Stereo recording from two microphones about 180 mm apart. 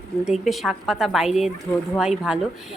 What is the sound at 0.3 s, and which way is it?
A woman's voice, centre (ahead or behind).